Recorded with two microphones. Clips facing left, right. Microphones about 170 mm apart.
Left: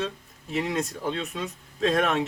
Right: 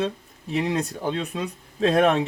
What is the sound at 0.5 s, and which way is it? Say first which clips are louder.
Speech: right 3 dB; 35° right (ahead or behind).